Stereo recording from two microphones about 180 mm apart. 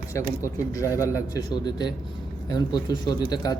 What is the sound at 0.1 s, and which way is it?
A man's voice, 15° left (ahead or behind).